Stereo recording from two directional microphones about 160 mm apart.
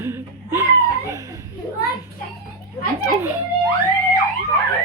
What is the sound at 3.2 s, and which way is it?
Laughter, 15° right (ahead or behind).